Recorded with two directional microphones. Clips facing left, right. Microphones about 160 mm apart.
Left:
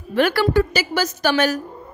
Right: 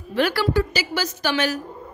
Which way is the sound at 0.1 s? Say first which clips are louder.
Left 3 dB; 50° left (ahead or behind).